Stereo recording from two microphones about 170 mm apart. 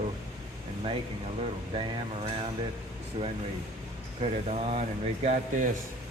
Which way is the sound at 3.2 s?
35° right (ahead or behind).